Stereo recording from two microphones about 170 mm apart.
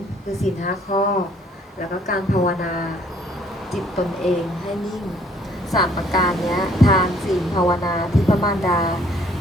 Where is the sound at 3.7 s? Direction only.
Centre (ahead or behind).